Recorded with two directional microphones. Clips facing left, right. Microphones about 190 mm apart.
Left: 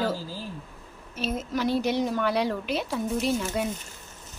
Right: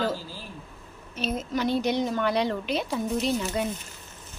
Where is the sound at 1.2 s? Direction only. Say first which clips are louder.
Even; 5° left (ahead or behind).